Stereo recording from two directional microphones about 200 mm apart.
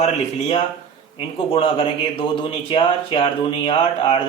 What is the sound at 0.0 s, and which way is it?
Speech, 30° left (ahead or behind).